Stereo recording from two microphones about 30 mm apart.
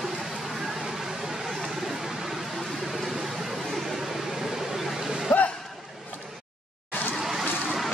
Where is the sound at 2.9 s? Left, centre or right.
Centre.